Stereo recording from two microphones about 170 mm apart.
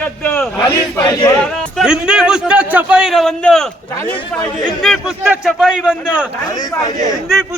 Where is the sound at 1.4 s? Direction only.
5° left (ahead or behind).